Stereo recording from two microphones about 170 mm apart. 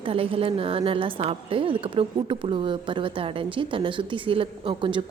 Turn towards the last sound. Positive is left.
turn(degrees=-30)  # may be behind; listen again after turning